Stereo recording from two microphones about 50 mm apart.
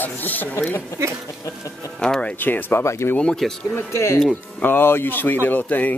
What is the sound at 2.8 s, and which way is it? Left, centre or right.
Speech, left.